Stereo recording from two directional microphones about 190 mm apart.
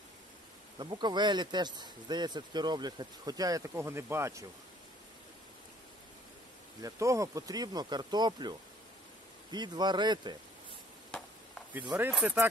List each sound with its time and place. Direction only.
0.7 s speech: 25° right (ahead or behind)
6.8 s speech: 15° right (ahead or behind)
11.1 s a sound: 5° left (ahead or behind)
12.0 s speech: 5° right (ahead or behind)